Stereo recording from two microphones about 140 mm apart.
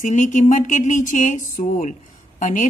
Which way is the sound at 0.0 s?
65° left (ahead or behind).